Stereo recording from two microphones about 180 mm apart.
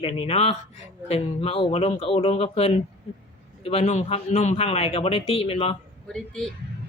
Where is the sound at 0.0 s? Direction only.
30° left (ahead or behind).